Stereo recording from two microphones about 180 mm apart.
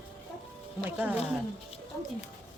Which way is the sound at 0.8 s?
10° right (ahead or behind).